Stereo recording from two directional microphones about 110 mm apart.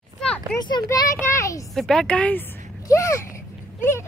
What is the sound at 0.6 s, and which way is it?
Speech, 40° left (ahead or behind).